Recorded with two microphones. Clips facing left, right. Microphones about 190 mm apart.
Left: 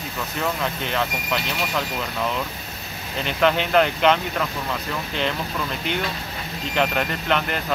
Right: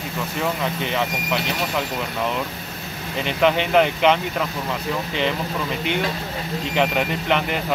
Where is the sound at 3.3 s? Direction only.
5° right (ahead or behind).